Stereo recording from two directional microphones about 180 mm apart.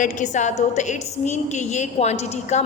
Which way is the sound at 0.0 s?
45° left (ahead or behind).